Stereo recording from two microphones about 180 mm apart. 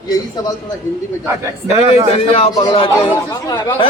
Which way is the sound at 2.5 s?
20° left (ahead or behind).